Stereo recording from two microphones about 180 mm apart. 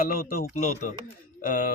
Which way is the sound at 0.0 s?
55° left (ahead or behind).